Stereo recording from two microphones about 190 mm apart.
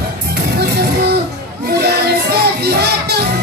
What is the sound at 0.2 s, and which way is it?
Music, 60° right (ahead or behind).